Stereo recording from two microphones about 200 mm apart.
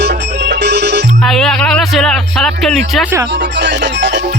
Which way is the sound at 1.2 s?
Centre (ahead or behind).